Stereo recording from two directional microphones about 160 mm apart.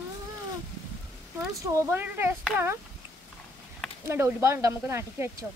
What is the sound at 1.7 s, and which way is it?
Speech, 15° right (ahead or behind).